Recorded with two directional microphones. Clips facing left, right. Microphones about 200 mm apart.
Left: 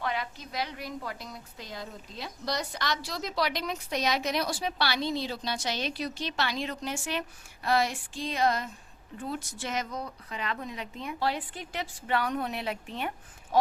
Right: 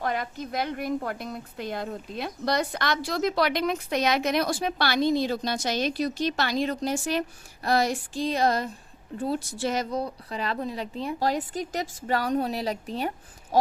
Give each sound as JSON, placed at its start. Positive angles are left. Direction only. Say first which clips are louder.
{"t": 0.0, "sound": "a woman's voice", "louder": "right 4 dB", "side_deg": -45}